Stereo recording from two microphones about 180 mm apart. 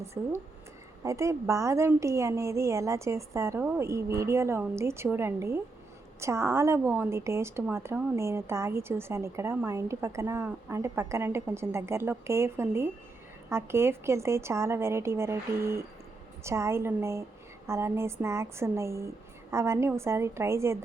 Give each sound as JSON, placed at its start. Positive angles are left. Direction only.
{"t": 0.0, "sound": "a woman's voice", "side_deg": -15}